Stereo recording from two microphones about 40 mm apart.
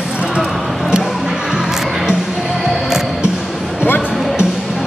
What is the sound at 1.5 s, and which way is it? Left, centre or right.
Music, centre.